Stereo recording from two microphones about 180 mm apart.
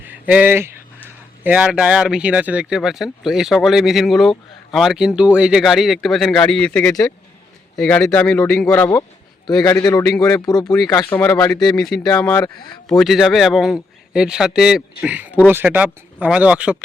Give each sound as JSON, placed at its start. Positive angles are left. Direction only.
{"t": 0.0, "sound": "a man's voice", "side_deg": -10}
{"t": 12.9, "sound": "speech", "side_deg": 0}